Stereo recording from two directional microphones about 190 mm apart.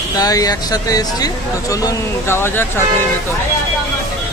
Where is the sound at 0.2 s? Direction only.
20° left (ahead or behind).